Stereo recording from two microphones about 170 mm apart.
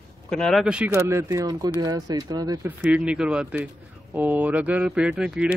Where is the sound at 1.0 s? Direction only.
15° right (ahead or behind).